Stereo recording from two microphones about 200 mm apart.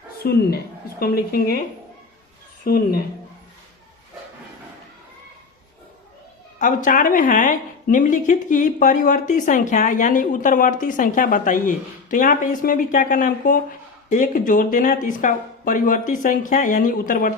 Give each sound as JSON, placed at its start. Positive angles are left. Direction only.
{"t": 0.2, "sound": "a woman's voice", "side_deg": 50}
{"t": 2.6, "sound": "speech", "side_deg": 45}
{"t": 6.6, "sound": "speech", "side_deg": 40}